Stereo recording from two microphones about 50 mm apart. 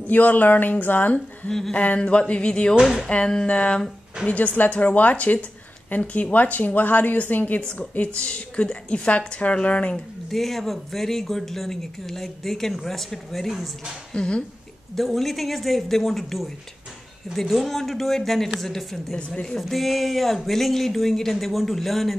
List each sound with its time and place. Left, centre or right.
0.0 s a woman's voice: left
2.8 s speech: centre
3.1 s a woman's voice: centre
4.2 s a woman's voice: centre
4.6 s a woman's voice: left
10.3 s speech: centre
14.1 s a woman's voice: centre
15.0 s speech: centre
19.1 s a woman's voice: centre
19.5 s speech: centre